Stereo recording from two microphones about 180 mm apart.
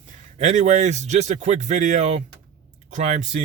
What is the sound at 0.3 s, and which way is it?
Speech, 40° right (ahead or behind).